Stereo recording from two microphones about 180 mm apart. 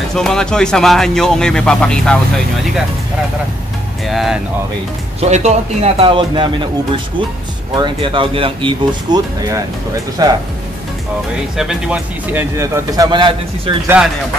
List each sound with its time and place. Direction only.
0.1 s speech: 5° left (ahead or behind)
4.1 s speech: centre (ahead or behind)
5.3 s speech: 35° right (ahead or behind)
7.7 s speech: 25° right (ahead or behind)
11.5 s speech: 5° right (ahead or behind); by 13.7 s 25° right (ahead or behind)
13.8 s speech: 5° right (ahead or behind)